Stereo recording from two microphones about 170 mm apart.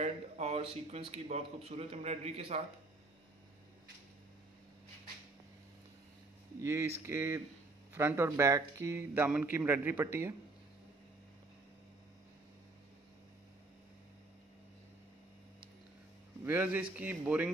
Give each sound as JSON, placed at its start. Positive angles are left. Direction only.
{"t": 0.0, "sound": "speech", "side_deg": -40}
{"t": 6.6, "sound": "speech", "side_deg": -15}
{"t": 16.4, "sound": "speech", "side_deg": -10}